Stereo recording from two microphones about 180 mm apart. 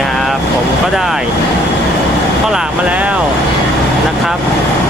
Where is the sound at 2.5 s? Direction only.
5° right (ahead or behind).